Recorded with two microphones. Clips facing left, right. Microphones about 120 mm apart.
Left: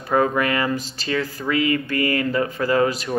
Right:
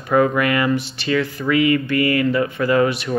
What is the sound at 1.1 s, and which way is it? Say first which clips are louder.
Speech: right 4 dB; 30° left (ahead or behind).